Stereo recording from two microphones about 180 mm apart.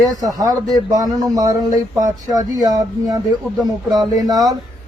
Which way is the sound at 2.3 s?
20° right (ahead or behind).